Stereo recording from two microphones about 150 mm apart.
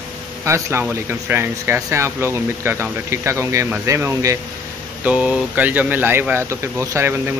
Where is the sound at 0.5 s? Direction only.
20° right (ahead or behind).